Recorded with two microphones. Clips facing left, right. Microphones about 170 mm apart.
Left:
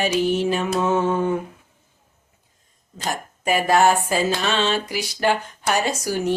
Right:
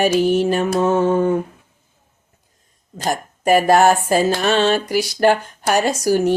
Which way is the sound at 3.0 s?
45° right (ahead or behind).